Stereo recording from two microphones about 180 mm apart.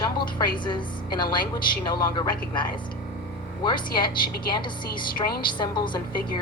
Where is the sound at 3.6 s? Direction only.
25° left (ahead or behind).